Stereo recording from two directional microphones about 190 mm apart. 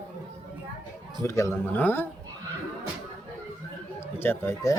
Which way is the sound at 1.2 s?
15° left (ahead or behind).